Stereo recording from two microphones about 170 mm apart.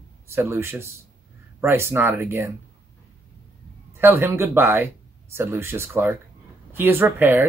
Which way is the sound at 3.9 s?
15° right (ahead or behind).